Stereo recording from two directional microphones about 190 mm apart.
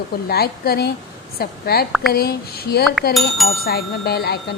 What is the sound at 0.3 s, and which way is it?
Speech, 55° left (ahead or behind).